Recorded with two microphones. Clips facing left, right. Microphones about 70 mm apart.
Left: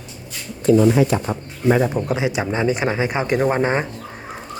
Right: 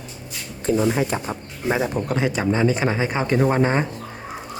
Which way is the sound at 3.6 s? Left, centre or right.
Centre.